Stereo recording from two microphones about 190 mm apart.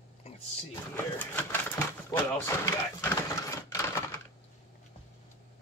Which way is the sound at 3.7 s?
15° left (ahead or behind).